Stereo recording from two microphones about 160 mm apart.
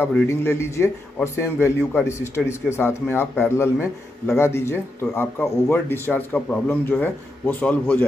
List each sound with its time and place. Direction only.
0.0 s a man's voice: 15° left (ahead or behind)
3.7 s a man's voice: centre (ahead or behind)
4.4 s a man's voice: 15° left (ahead or behind)